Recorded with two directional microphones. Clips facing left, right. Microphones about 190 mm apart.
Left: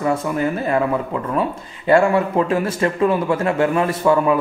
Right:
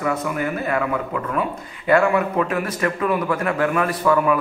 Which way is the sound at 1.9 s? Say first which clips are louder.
Left 2 dB; 30° left (ahead or behind).